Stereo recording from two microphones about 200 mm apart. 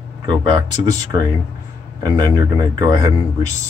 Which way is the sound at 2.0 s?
20° right (ahead or behind).